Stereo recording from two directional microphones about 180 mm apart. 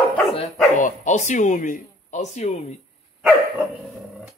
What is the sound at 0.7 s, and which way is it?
Speech, 45° left (ahead or behind).